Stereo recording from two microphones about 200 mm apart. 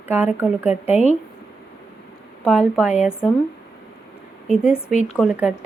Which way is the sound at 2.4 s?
5° right (ahead or behind).